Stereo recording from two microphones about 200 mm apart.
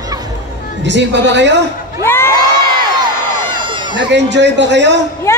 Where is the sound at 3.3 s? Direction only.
25° right (ahead or behind).